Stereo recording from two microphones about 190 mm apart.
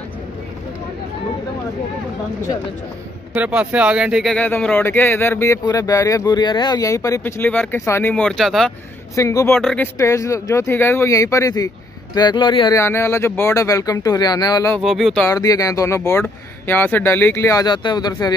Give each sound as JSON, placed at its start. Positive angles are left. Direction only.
{"t": 3.3, "sound": "speech", "side_deg": -5}
{"t": 9.1, "sound": "speech", "side_deg": 15}
{"t": 9.6, "sound": "speech", "side_deg": 0}
{"t": 9.9, "sound": "speech", "side_deg": 15}
{"t": 14.8, "sound": "speech", "side_deg": 0}
{"t": 15.2, "sound": "speech", "side_deg": 20}